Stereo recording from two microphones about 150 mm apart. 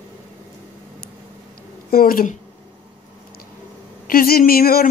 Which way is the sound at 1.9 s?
70° left (ahead or behind).